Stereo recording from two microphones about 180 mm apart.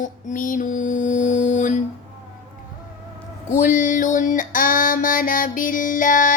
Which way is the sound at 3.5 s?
45° left (ahead or behind).